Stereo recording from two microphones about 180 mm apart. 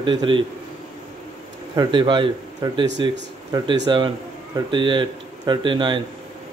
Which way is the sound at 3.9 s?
25° right (ahead or behind).